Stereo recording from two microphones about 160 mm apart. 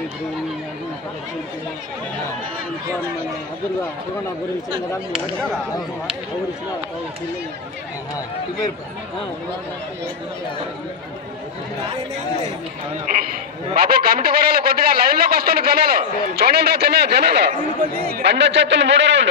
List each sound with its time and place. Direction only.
13.0 s speech: 60° right (ahead or behind)
13.7 s a man's voice: 70° right (ahead or behind); by 17.6 s 90° right
17.9 s a man's voice: 65° right (ahead or behind); by 19.2 s 90° right